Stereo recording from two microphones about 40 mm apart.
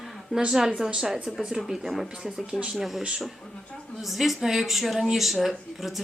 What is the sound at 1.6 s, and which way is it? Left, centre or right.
Speech, centre.